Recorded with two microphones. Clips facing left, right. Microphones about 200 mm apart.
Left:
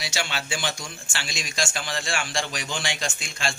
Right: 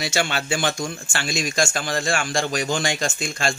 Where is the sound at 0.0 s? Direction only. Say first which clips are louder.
Right 7 dB; 50° right (ahead or behind).